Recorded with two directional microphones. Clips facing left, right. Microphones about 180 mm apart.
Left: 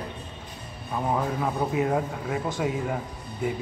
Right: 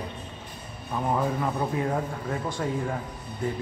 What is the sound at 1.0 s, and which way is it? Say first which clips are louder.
Speech: even; centre (ahead or behind).